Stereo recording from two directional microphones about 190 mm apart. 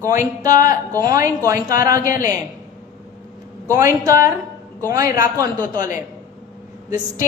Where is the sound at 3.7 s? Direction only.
15° right (ahead or behind).